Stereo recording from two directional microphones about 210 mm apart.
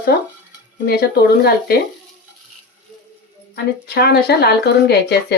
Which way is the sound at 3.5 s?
50° left (ahead or behind).